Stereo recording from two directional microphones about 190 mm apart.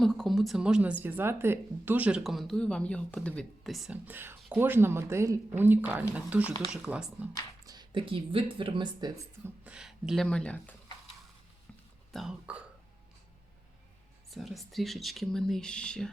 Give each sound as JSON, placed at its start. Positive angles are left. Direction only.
{"t": 0.0, "sound": "a woman's voice", "side_deg": 0}
{"t": 7.6, "sound": "speech", "side_deg": -20}
{"t": 9.6, "sound": "speech", "side_deg": -5}
{"t": 12.1, "sound": "speech", "side_deg": -5}
{"t": 14.3, "sound": "speech", "side_deg": 0}